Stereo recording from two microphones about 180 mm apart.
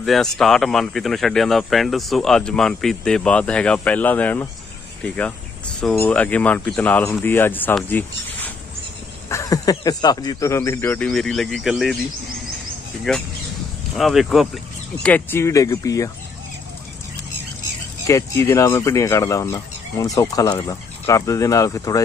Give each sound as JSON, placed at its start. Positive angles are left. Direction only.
{"t": 0.0, "sound": "speech", "side_deg": 0}
{"t": 13.1, "sound": "speech", "side_deg": 0}
{"t": 15.0, "sound": "speech", "side_deg": 10}
{"t": 18.0, "sound": "speech", "side_deg": 15}